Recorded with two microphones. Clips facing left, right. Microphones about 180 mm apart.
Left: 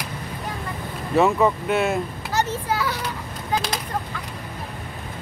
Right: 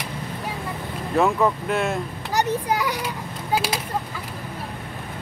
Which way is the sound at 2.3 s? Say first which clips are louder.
Right 2 dB; 15° right (ahead or behind).